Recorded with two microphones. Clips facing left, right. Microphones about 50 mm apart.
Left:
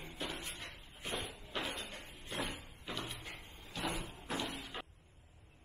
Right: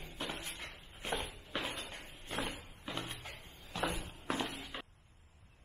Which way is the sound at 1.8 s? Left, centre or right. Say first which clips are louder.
Even; right.